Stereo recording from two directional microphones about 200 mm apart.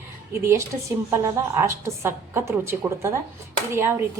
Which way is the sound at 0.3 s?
15° right (ahead or behind).